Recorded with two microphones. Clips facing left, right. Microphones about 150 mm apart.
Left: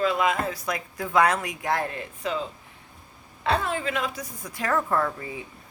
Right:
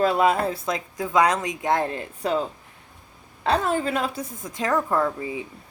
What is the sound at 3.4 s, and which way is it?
Speech, 40° right (ahead or behind).